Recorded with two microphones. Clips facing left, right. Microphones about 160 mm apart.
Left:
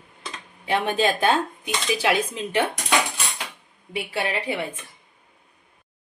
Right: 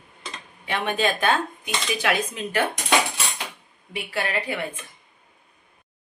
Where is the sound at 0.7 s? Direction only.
35° left (ahead or behind).